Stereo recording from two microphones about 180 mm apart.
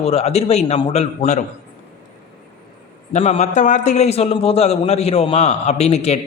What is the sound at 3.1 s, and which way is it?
A man's voice, 40° left (ahead or behind).